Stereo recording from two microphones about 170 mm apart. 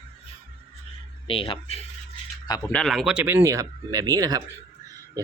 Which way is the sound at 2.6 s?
Centre (ahead or behind).